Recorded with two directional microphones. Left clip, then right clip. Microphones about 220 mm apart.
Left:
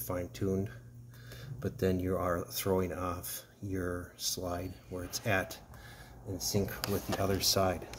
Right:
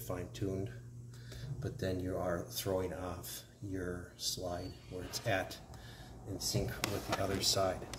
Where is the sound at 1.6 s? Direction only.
55° left (ahead or behind).